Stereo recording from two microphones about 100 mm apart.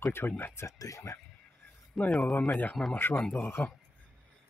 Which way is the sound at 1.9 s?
10° left (ahead or behind).